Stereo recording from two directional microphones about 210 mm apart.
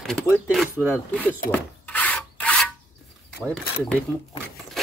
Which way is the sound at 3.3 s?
5° left (ahead or behind).